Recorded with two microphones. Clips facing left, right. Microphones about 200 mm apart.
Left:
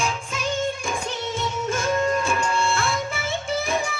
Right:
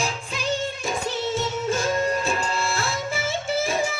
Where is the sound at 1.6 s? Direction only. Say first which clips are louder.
Left 2 dB; 35° right (ahead or behind).